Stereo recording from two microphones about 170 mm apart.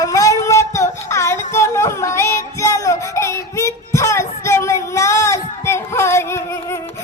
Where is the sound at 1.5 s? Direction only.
15° left (ahead or behind).